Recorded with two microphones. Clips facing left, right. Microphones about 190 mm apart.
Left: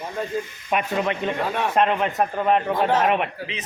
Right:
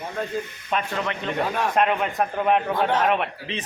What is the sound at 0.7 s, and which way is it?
Speech, 15° left (ahead or behind).